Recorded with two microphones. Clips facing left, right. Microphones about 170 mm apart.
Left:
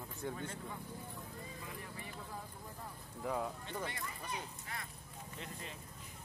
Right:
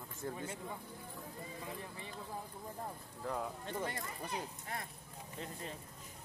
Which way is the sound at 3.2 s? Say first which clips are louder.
Left 1 dB; centre (ahead or behind).